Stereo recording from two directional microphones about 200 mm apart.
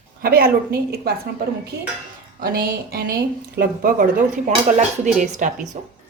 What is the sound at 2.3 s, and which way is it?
Speech, 50° right (ahead or behind).